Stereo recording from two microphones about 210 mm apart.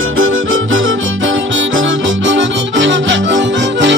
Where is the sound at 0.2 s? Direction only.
70° right (ahead or behind).